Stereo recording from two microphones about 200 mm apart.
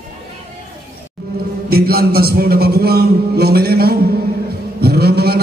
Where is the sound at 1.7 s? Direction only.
50° right (ahead or behind).